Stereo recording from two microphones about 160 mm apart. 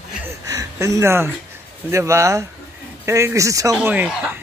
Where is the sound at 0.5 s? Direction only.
20° right (ahead or behind).